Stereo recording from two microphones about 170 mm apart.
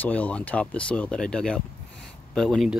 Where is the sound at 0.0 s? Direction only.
10° left (ahead or behind).